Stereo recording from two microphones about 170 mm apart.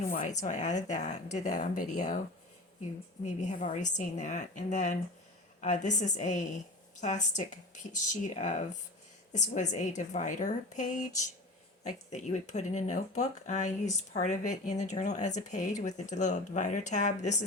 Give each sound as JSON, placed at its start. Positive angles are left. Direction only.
{"t": 0.1, "sound": "speech", "side_deg": 50}
{"t": 3.2, "sound": "speech", "side_deg": 45}